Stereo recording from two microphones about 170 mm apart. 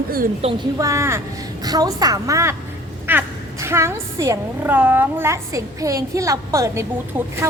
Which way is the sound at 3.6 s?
15° right (ahead or behind).